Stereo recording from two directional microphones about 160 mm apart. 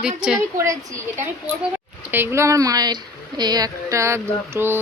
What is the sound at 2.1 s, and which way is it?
Speech, 15° right (ahead or behind).